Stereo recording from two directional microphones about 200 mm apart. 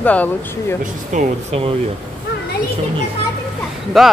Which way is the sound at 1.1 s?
30° right (ahead or behind).